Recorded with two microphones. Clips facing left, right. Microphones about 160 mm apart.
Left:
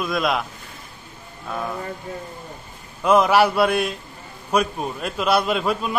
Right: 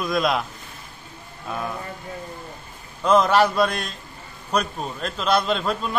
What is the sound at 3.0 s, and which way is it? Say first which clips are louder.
A man's voice: left 1 dB; 10° left (ahead or behind).